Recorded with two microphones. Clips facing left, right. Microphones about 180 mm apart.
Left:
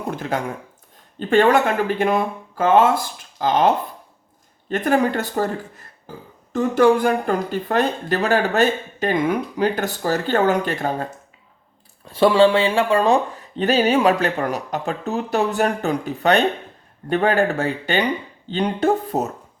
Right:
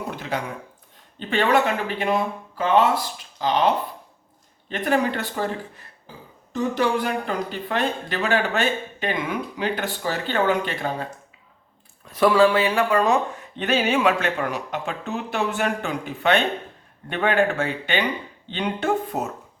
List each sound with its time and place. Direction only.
0.2 s speech: 45° left (ahead or behind)
12.0 s speech: 30° left (ahead or behind)